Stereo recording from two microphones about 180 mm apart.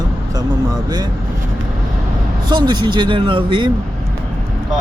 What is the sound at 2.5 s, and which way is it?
Speech, 25° right (ahead or behind).